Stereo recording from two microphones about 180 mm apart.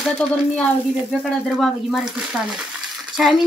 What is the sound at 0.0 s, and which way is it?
Speech, 5° left (ahead or behind).